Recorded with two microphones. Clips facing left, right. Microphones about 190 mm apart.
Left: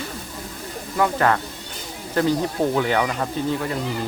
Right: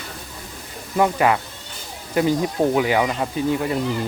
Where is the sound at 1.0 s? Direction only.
10° right (ahead or behind).